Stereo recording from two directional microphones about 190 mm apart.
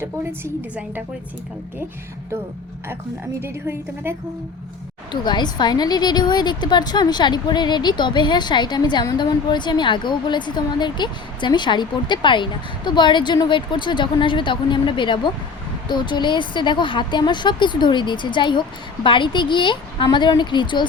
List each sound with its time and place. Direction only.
0.0 s a woman's voice: 10° right (ahead or behind)
3.4 s a woman's voice: 10° right (ahead or behind)
5.2 s a woman's voice: 25° left (ahead or behind)